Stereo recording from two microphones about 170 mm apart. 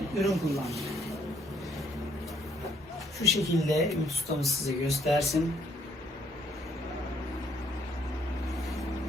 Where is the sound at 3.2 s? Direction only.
20° right (ahead or behind).